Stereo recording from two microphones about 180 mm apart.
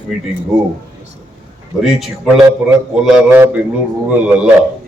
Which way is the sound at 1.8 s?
Centre (ahead or behind).